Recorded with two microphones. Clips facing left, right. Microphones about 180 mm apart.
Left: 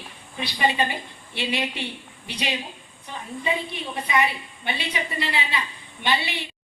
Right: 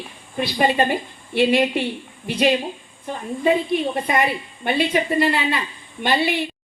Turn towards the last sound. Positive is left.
turn(degrees=-50)  # may be behind; listen again after turning